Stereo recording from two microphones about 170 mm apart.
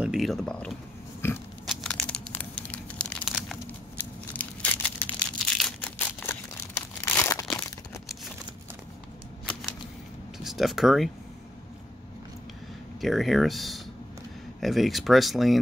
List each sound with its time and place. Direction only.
0.0 s speech: centre (ahead or behind)
1.7 s crumpling: 5° left (ahead or behind)
4.0 s crushing: 10° left (ahead or behind)
7.2 s crumpling: 15° left (ahead or behind)
10.4 s speech: centre (ahead or behind)
13.0 s speech: centre (ahead or behind)